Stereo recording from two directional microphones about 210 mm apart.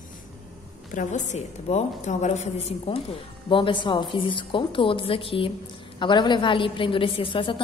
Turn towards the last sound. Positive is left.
turn(degrees=25)  # may be behind; listen again after turning